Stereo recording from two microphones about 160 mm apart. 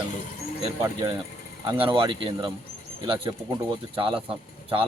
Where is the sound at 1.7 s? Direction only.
35° right (ahead or behind).